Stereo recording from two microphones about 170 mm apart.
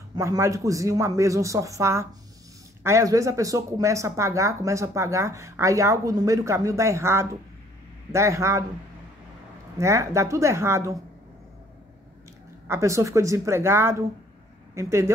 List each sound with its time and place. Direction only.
0.1 s speech: 20° right (ahead or behind)
9.8 s speech: 15° right (ahead or behind)
12.6 s speech: 15° right (ahead or behind)